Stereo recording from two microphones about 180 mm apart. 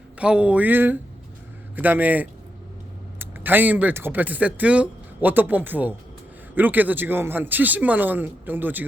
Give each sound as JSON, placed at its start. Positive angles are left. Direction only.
{"t": 0.2, "sound": "a man's voice", "side_deg": -5}